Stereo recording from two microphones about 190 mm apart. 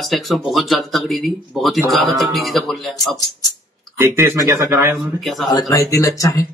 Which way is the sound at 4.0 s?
15° right (ahead or behind).